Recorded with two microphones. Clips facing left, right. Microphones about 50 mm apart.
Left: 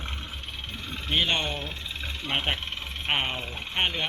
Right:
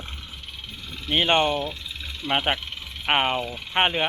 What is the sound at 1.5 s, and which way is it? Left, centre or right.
Vehicle, left.